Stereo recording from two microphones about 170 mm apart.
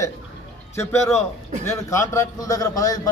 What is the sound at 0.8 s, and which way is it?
A man's voice, 15° left (ahead or behind).